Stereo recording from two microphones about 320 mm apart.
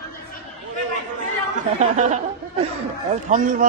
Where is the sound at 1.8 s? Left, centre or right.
Right.